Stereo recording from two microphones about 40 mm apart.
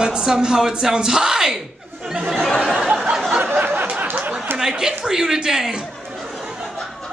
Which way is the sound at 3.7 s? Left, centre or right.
Right.